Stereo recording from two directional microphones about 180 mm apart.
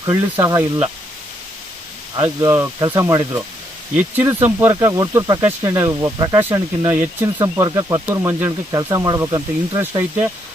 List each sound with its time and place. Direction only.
0.0 s speech: 15° right (ahead or behind)
2.1 s speech: 20° right (ahead or behind)